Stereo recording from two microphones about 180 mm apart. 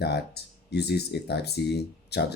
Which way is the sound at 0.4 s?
65° left (ahead or behind).